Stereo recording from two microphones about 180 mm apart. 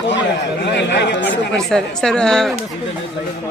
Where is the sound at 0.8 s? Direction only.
75° left (ahead or behind).